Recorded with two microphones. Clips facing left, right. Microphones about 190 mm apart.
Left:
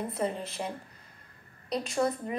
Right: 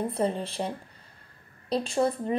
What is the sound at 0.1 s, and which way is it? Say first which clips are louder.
Speech: right 4 dB; 30° right (ahead or behind).